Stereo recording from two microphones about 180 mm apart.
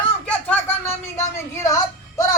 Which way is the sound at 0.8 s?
15° left (ahead or behind).